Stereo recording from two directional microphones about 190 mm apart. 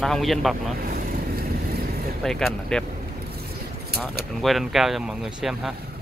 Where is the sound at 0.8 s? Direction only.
50° right (ahead or behind).